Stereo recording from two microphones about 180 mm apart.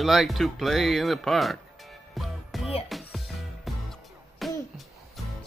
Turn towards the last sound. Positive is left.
turn(degrees=0)  # may be behind; listen again after turning